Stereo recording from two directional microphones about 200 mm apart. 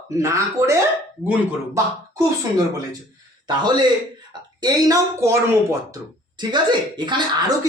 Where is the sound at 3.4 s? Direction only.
20° right (ahead or behind).